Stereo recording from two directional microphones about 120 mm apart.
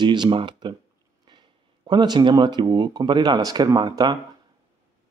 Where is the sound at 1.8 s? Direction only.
35° right (ahead or behind).